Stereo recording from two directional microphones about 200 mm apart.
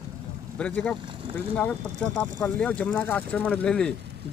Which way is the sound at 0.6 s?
5° left (ahead or behind).